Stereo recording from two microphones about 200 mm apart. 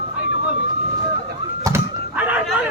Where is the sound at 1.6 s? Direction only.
10° right (ahead or behind).